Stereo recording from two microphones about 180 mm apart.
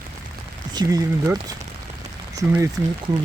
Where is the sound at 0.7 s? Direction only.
20° right (ahead or behind).